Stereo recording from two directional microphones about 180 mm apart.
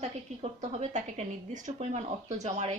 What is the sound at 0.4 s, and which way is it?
Speech, 40° right (ahead or behind).